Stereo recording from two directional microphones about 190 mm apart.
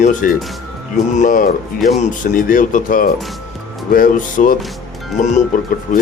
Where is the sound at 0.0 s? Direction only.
40° left (ahead or behind).